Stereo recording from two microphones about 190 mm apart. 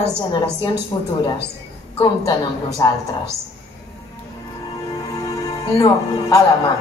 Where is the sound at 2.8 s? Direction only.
20° left (ahead or behind).